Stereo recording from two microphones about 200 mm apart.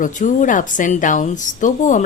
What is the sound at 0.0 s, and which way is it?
A woman's voice, 40° left (ahead or behind).